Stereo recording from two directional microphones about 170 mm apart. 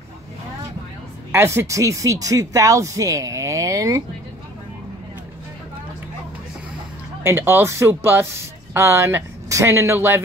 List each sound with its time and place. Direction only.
1.3 s speech: 15° right (ahead or behind)
7.2 s speech: 15° right (ahead or behind)